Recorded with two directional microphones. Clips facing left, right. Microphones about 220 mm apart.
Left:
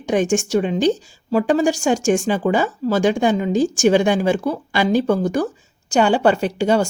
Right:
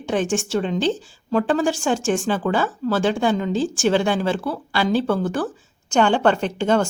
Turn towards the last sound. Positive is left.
turn(degrees=10)  # may be behind; listen again after turning